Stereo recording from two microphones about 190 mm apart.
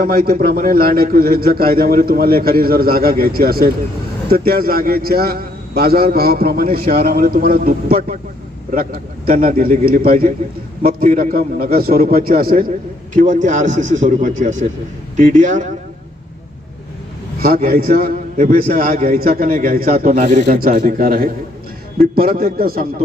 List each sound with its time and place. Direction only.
0.0 s a man's voice: 50° right (ahead or behind)
17.4 s a man's voice: 50° right (ahead or behind)